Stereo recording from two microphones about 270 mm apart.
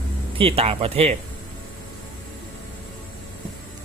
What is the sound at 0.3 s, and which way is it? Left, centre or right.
Speech, right.